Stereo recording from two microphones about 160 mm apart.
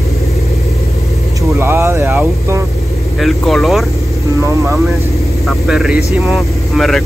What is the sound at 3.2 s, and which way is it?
Speech, centre (ahead or behind).